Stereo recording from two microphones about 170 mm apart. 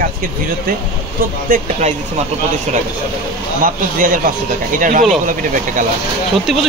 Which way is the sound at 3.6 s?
55° right (ahead or behind).